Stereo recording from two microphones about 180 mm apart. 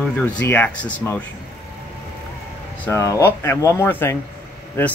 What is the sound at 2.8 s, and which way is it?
A man's voice, 15° left (ahead or behind).